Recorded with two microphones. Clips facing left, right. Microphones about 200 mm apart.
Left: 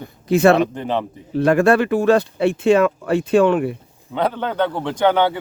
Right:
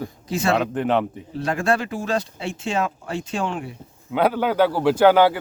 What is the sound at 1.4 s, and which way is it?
Speech, 60° left (ahead or behind).